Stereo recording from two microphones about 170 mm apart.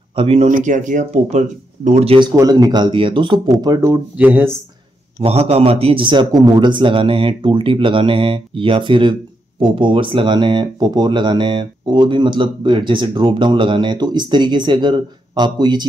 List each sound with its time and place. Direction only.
0.1 s speech: 35° right (ahead or behind)
0.5 s speech: 50° right (ahead or behind)
2.3 s speech: 20° right (ahead or behind)
5.2 s a man's voice: 35° right (ahead or behind)